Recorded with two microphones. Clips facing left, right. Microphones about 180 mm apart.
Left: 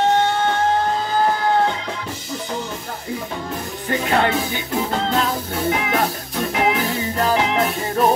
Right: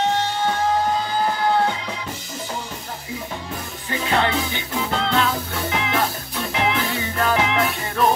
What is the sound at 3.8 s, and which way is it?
Music, 45° left (ahead or behind).